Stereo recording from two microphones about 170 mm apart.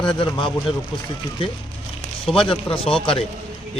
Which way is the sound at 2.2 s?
30° left (ahead or behind).